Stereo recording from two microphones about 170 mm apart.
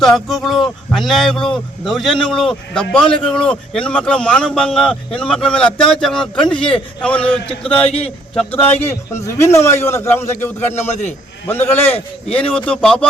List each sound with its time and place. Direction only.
0.0 s a man's voice: centre (ahead or behind)
7.9 s speech: 35° left (ahead or behind)
8.4 s a man's voice: 10° left (ahead or behind)